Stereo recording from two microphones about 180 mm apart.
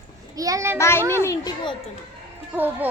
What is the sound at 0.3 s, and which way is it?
Speech, 20° right (ahead or behind).